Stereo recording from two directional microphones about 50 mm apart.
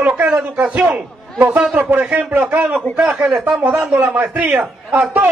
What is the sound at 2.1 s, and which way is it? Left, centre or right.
Speech, right.